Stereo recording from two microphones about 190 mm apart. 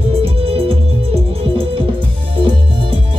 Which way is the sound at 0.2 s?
30° right (ahead or behind).